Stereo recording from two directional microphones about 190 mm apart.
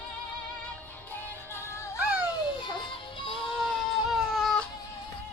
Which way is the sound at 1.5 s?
15° left (ahead or behind).